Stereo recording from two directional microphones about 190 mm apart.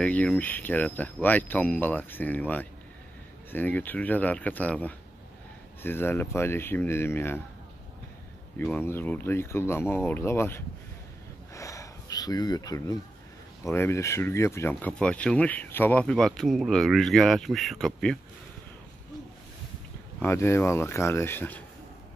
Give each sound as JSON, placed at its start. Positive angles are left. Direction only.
{"t": 0.0, "sound": "speech", "side_deg": 5}
{"t": 8.5, "sound": "speech", "side_deg": 10}
{"t": 20.2, "sound": "speech", "side_deg": 10}